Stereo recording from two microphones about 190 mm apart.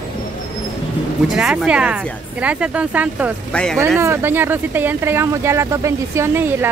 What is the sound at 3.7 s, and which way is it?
Speech, 15° right (ahead or behind).